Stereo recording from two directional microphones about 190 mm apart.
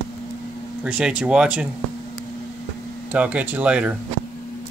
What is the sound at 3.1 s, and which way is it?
Speech, 5° right (ahead or behind).